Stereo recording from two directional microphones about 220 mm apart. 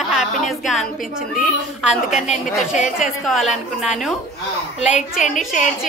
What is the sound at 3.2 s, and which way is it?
Speech, centre (ahead or behind).